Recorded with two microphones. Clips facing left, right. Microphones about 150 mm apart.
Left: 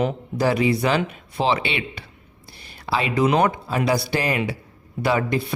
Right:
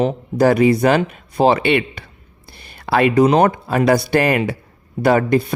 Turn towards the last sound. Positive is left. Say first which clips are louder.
# right 7 dB
turn(degrees=-45)  # may be behind; listen again after turning